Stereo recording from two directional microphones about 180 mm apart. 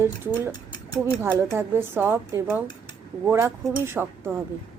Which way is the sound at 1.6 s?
10° right (ahead or behind).